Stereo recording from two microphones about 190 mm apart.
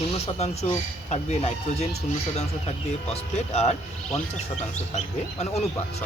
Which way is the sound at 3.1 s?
35° left (ahead or behind).